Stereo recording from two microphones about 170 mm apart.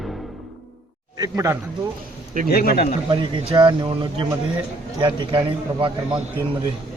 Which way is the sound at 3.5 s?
25° right (ahead or behind).